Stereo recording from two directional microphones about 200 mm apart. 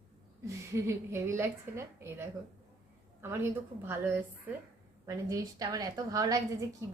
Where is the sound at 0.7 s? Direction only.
15° right (ahead or behind).